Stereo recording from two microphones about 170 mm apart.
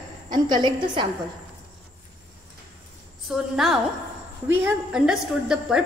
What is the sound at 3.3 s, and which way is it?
A woman's voice, centre (ahead or behind).